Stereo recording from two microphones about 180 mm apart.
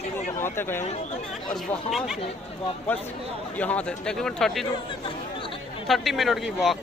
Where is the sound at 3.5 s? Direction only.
10° left (ahead or behind).